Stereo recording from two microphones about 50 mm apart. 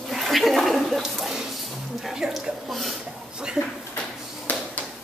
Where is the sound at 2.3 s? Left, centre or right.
Centre.